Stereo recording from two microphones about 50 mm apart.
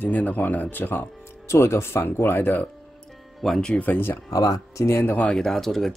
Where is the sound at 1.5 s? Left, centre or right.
Left.